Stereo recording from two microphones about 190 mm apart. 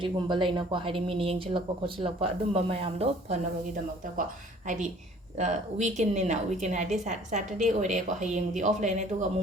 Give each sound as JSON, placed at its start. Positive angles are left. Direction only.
{"t": 0.0, "sound": "speech", "side_deg": -25}
{"t": 4.6, "sound": "a woman's voice", "side_deg": -40}